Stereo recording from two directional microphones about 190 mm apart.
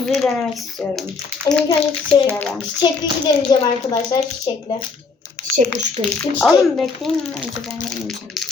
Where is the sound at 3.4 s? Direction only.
25° left (ahead or behind).